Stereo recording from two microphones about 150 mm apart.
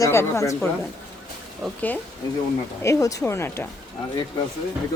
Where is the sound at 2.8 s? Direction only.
20° left (ahead or behind).